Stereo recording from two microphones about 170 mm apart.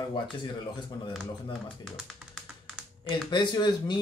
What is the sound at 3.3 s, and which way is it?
Speech, 25° left (ahead or behind).